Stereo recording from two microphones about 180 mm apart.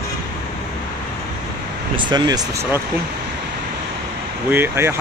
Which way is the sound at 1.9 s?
25° right (ahead or behind).